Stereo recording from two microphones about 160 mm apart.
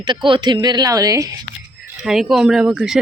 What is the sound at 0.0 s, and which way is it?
A woman's voice, 30° right (ahead or behind).